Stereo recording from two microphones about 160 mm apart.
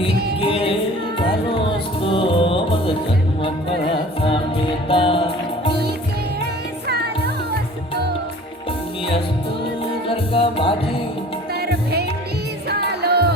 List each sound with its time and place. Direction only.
0.1 s music: 90° right
2.0 s music: 35° left (ahead or behind)
4.9 s music: 35° left (ahead or behind)
6.4 s music: 90° right
10.1 s music: 35° left (ahead or behind)
11.6 s music: 90° right